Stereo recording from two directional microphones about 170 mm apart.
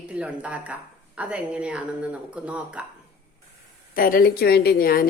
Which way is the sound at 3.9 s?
55° left (ahead or behind).